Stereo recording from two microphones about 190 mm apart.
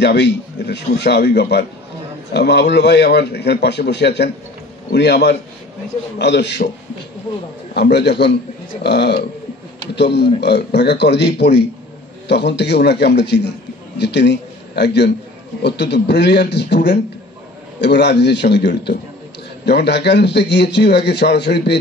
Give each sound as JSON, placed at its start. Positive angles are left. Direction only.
{"t": 0.0, "sound": "a man's voice", "side_deg": 65}
{"t": 7.7, "sound": "a man's voice", "side_deg": 60}